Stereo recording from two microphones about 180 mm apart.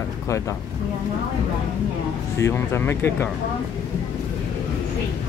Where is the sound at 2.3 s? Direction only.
15° left (ahead or behind).